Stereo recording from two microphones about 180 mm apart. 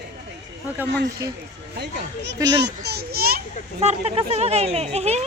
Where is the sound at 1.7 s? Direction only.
65° right (ahead or behind).